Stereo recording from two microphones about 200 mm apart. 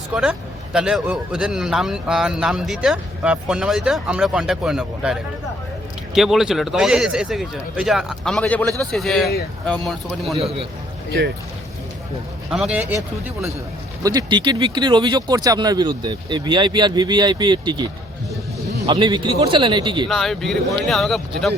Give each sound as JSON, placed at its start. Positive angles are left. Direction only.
{"t": 0.1, "sound": "speech", "side_deg": -5}
{"t": 6.1, "sound": "speech", "side_deg": 0}
{"t": 10.3, "sound": "a man's voice", "side_deg": -30}
{"t": 12.5, "sound": "speech", "side_deg": 0}
{"t": 14.0, "sound": "speech", "side_deg": -20}
{"t": 18.9, "sound": "speech", "side_deg": -25}
{"t": 20.1, "sound": "speech", "side_deg": 0}